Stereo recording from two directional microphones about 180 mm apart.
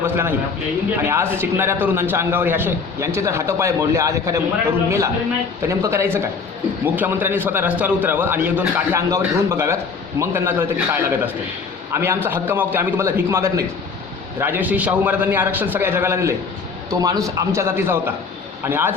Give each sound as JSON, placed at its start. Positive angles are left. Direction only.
{"t": 0.0, "sound": "a man's voice", "side_deg": -10}